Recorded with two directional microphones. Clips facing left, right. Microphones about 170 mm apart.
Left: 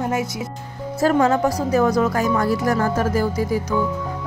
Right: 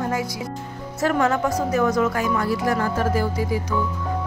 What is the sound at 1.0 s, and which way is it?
Speech, 35° left (ahead or behind).